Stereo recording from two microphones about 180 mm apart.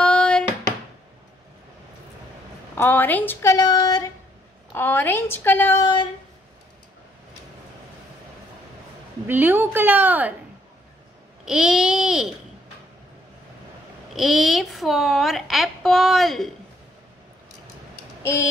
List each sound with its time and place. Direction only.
0.0 s a sound: 5° left (ahead or behind)
2.8 s speech: 10° left (ahead or behind)
4.7 s a woman's voice: 10° left (ahead or behind)
9.3 s a woman's voice: 10° right (ahead or behind)
11.4 s a woman's voice: 5° right (ahead or behind)
14.1 s a woman's voice: centre (ahead or behind)
18.2 s a sound: 15° left (ahead or behind)